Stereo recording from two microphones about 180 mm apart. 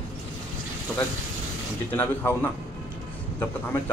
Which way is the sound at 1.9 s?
10° left (ahead or behind).